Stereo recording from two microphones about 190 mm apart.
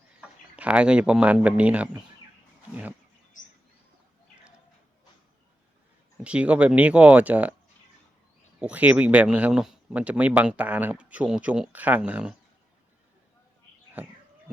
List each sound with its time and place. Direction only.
0.2 s speech: 5° right (ahead or behind)
6.2 s speech: 5° right (ahead or behind)
8.5 s speech: 5° right (ahead or behind)
14.0 s a sound: 10° right (ahead or behind)